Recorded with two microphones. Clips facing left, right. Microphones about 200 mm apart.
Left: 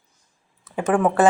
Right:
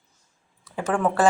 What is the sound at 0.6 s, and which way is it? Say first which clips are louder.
Speech: left 4 dB; 20° left (ahead or behind).